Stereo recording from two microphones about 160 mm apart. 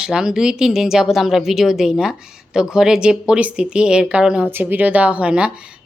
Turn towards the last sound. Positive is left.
turn(degrees=-5)  # may be behind; listen again after turning